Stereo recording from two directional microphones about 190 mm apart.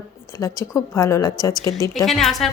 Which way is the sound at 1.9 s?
Centre (ahead or behind).